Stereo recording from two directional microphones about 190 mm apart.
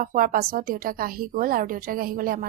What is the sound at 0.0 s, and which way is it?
A woman's voice, 45° right (ahead or behind).